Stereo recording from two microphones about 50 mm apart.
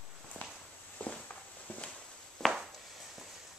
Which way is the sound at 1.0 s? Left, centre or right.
Left.